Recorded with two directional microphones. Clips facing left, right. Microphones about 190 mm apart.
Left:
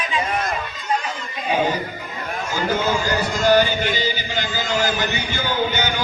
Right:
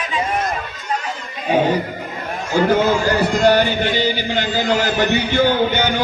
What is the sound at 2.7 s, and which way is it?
Speech, 60° right (ahead or behind).